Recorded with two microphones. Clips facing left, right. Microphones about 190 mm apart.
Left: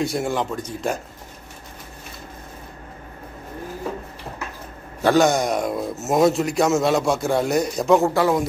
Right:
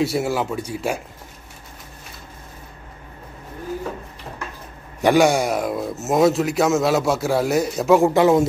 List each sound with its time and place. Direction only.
0.0 s speech: 5° right (ahead or behind)
5.0 s a man's voice: 10° right (ahead or behind)
8.1 s speech: 20° right (ahead or behind)